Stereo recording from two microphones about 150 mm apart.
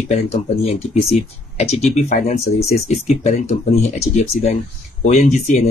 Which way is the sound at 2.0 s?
50° left (ahead or behind).